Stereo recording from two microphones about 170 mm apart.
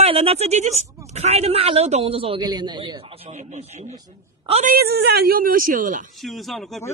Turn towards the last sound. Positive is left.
turn(degrees=0)  # may be behind; listen again after turning